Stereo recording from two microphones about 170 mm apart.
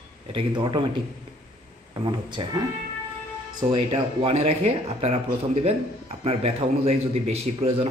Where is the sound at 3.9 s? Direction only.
35° right (ahead or behind).